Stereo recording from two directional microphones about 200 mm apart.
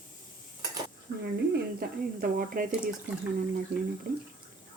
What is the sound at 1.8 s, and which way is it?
A woman's voice, 45° right (ahead or behind).